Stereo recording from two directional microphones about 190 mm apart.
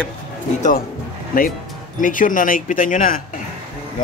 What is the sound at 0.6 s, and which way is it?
Speech, 45° left (ahead or behind).